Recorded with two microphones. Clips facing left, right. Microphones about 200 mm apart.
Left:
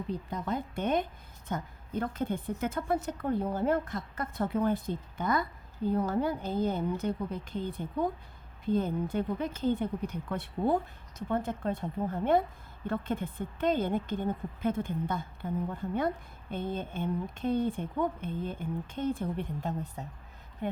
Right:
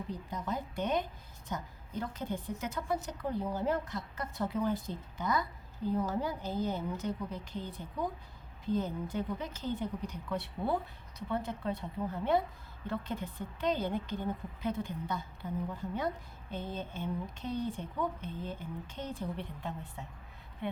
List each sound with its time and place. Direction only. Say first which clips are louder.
0.1 s a woman's voice: left 5 dB; 60° left (ahead or behind)